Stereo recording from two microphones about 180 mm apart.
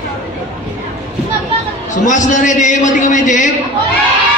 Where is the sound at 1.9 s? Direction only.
45° left (ahead or behind).